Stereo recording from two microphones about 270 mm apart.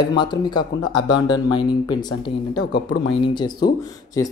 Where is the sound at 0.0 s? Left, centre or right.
Centre.